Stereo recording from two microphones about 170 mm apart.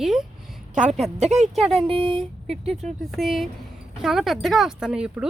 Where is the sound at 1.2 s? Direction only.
40° right (ahead or behind).